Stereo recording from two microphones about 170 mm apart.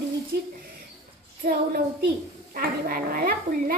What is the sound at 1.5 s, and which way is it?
A woman's voice, 60° right (ahead or behind).